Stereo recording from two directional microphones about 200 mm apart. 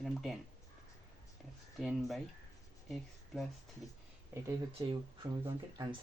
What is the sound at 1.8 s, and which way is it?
Speech, centre (ahead or behind).